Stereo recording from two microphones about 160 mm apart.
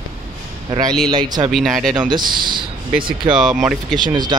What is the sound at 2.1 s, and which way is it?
Speech, 30° right (ahead or behind).